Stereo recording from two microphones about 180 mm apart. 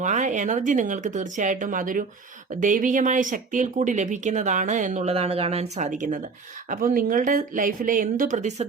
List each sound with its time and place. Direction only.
0.0 s speech: 45° right (ahead or behind)